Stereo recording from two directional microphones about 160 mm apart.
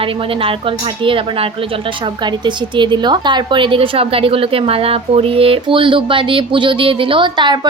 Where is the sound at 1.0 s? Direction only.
35° right (ahead or behind).